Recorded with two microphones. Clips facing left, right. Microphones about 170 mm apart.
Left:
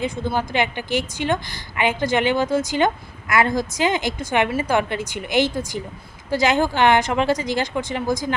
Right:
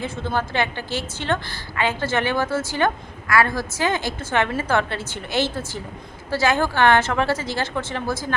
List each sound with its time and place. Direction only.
0.0 s a woman's voice: 15° left (ahead or behind)